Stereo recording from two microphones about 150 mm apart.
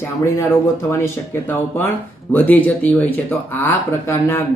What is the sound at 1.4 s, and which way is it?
Speech, 15° left (ahead or behind).